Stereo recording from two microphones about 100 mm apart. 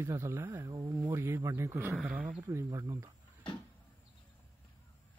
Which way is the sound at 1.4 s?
30° right (ahead or behind).